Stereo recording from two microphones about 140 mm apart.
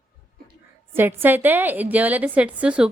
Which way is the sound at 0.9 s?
15° right (ahead or behind).